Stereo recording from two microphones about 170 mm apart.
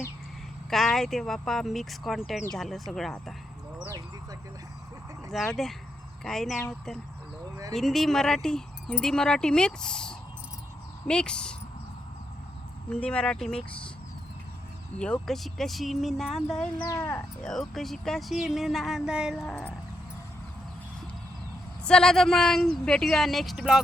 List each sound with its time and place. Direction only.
0.7 s speech: centre (ahead or behind)
3.8 s speech: 20° right (ahead or behind)
5.3 s speech: centre (ahead or behind)
12.9 s speech: 5° left (ahead or behind)
14.9 s speech: 5° left (ahead or behind)
16.8 s speech: 15° left (ahead or behind)
17.5 s speech: centre (ahead or behind)
21.8 s speech: 5° left (ahead or behind)